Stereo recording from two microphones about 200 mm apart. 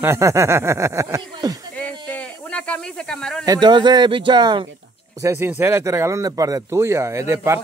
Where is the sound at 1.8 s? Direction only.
10° left (ahead or behind).